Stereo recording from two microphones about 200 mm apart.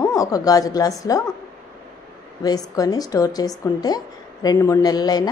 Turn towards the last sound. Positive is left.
turn(degrees=20)  # may be behind; listen again after turning